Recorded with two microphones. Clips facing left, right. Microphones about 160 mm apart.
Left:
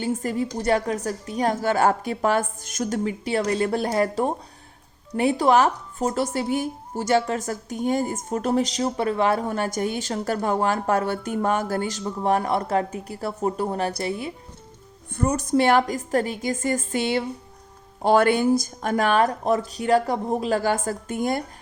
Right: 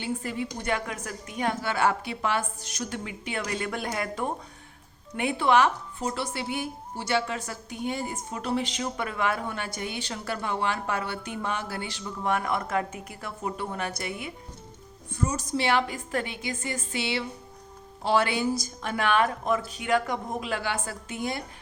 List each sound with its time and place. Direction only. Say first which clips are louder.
0.0 s a woman's voice: left 6 dB; 40° left (ahead or behind)
15.1 s speech: left 7 dB; 60° left (ahead or behind)